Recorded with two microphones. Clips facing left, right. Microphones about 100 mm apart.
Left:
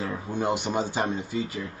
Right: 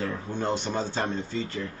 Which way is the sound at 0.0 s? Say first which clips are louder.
Left 1 dB; 10° left (ahead or behind).